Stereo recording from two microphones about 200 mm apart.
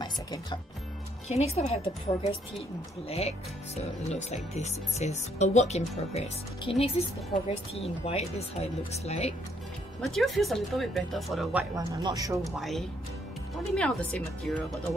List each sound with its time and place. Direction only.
0.0 s music: 20° left (ahead or behind)
1.3 s speech: 30° left (ahead or behind)
10.0 s speech: centre (ahead or behind)
11.7 s speech: 15° right (ahead or behind)
12.4 s speech: centre (ahead or behind)